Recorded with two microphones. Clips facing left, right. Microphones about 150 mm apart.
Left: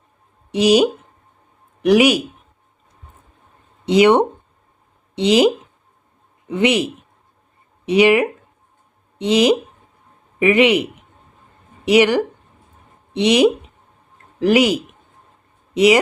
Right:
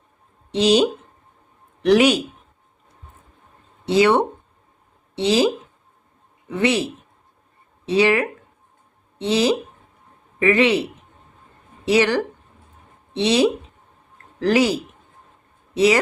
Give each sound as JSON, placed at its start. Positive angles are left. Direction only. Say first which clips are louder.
{"t": 0.5, "sound": "speech", "louder": "left 3 dB", "side_deg": 10}
{"t": 3.8, "sound": "speech", "louder": "left 4 dB", "side_deg": 20}
{"t": 6.5, "sound": "speech", "louder": "left 3 dB", "side_deg": 15}
{"t": 11.9, "sound": "speech", "louder": "left 4 dB", "side_deg": 15}